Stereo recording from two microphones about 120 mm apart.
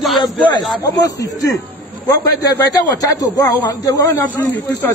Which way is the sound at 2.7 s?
30° left (ahead or behind).